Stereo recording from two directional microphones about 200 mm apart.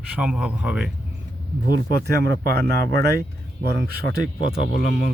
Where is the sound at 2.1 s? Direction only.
50° right (ahead or behind).